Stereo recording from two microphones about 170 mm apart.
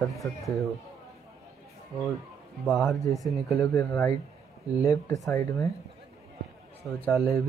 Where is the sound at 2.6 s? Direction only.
Centre (ahead or behind).